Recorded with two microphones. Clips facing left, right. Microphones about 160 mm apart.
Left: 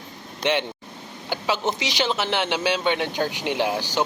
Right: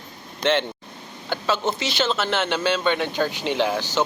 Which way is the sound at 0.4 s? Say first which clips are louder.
Right 2 dB; 15° left (ahead or behind).